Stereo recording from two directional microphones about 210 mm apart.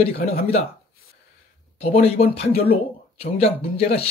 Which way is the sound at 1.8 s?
30° left (ahead or behind).